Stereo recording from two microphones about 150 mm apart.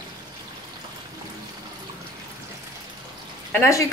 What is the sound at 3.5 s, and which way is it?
Dishes, 20° left (ahead or behind).